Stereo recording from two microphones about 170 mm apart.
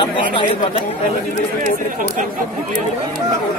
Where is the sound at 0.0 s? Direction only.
30° left (ahead or behind).